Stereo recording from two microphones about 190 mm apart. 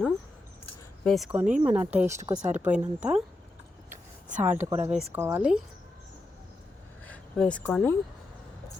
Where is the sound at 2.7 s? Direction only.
5° right (ahead or behind).